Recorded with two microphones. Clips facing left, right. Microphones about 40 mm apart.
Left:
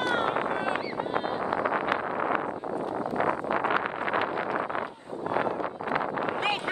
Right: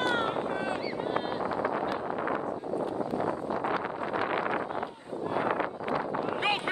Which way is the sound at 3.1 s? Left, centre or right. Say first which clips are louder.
Left 4 dB; left.